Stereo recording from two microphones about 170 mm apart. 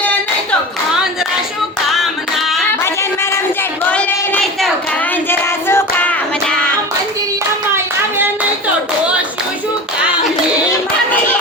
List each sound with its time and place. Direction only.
2.8 s a sound: 15° left (ahead or behind)
3.8 s child singing: 10° left (ahead or behind)
5.3 s music: 15° left (ahead or behind)